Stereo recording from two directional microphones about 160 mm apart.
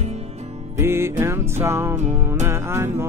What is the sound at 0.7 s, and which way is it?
Music, 15° right (ahead or behind).